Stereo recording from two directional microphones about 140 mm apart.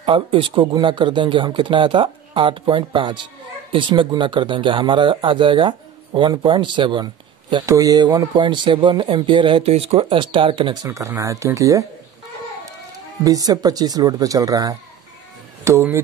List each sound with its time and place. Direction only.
0.0 s speech: 35° right (ahead or behind)
7.6 s speech: 25° right (ahead or behind)
13.2 s speech: 25° right (ahead or behind)